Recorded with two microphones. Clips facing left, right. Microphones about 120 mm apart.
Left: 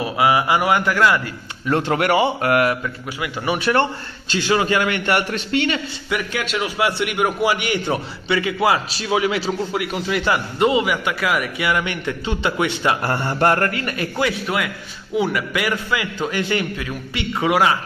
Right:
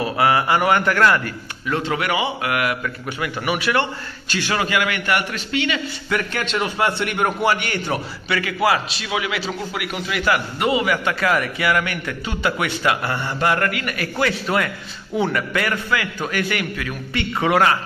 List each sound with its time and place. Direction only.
0.0 s a man's voice: 15° left (ahead or behind)
1.9 s mantra: 45° left (ahead or behind)
2.4 s a man's voice: 35° left (ahead or behind)
4.3 s a man's voice: 20° left (ahead or behind)
4.6 s a man's voice: 35° left (ahead or behind)
6.0 s a man's voice: 10° left (ahead or behind)
11.6 s a man's voice: 20° left (ahead or behind)
13.0 s mantra: 45° left (ahead or behind)
13.6 s a man's voice: 35° left (ahead or behind)
14.4 s a man's voice: 5° left (ahead or behind)